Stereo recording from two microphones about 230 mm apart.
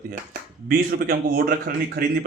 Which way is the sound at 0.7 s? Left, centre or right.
Right.